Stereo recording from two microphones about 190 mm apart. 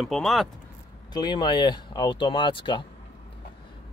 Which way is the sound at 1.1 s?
25° left (ahead or behind).